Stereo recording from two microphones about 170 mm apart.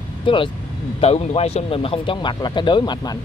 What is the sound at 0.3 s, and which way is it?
Speech, 30° left (ahead or behind).